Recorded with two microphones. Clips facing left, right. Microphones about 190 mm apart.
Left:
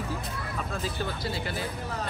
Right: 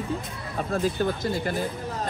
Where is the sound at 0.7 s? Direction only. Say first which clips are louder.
Right 10 dB; 50° right (ahead or behind).